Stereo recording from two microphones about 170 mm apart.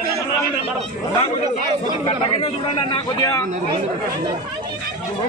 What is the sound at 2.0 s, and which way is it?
A man's voice, 35° left (ahead or behind).